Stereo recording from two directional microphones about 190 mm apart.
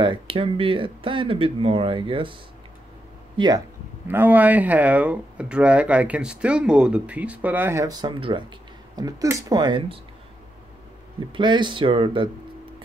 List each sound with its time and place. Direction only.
0.0 s speech: 25° right (ahead or behind)
3.3 s speech: 20° right (ahead or behind)
4.1 s speech: 10° right (ahead or behind)
11.3 s speech: 25° right (ahead or behind)